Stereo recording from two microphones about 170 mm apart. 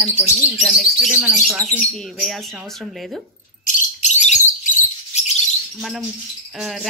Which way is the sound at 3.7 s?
45° left (ahead or behind).